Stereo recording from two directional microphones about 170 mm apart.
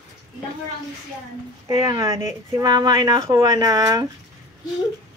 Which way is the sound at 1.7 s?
20° right (ahead or behind).